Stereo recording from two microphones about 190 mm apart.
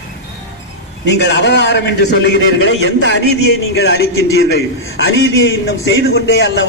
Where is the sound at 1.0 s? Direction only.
65° left (ahead or behind).